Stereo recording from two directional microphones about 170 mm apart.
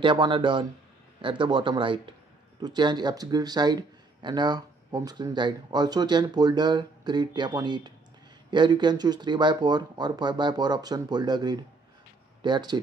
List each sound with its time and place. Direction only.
0.0 s speech: 30° right (ahead or behind)